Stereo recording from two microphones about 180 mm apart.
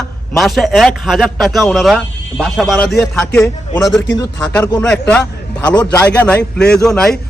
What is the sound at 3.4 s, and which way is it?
Speech, 15° left (ahead or behind).